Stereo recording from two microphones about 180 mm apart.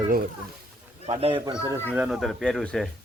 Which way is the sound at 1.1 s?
30° right (ahead or behind).